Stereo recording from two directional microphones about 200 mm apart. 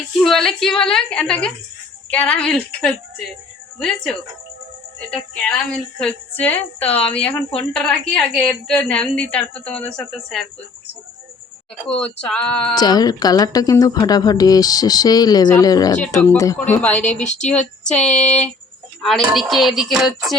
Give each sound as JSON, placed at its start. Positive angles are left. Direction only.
{"t": 0.2, "sound": "a woman's voice", "side_deg": 0}
{"t": 11.9, "sound": "a woman's voice", "side_deg": 5}
{"t": 12.7, "sound": "a woman's voice", "side_deg": 20}